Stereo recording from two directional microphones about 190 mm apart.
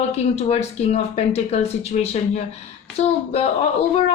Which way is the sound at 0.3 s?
35° left (ahead or behind).